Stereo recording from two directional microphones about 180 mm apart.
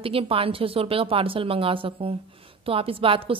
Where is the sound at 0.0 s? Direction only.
30° right (ahead or behind).